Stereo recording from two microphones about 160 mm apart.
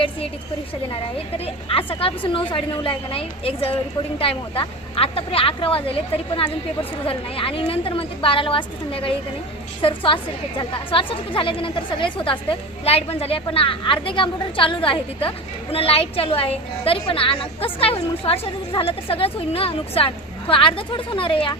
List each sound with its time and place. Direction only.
1.7 s a woman's voice: 35° left (ahead or behind)